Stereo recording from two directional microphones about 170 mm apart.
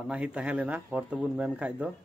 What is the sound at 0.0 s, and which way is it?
A man's voice, 5° right (ahead or behind).